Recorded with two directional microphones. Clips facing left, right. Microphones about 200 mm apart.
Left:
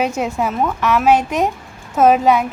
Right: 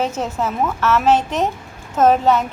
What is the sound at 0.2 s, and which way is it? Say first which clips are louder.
A woman's voice: left 2 dB; 10° left (ahead or behind).